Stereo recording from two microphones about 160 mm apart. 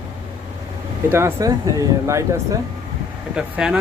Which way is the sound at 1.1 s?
15° right (ahead or behind).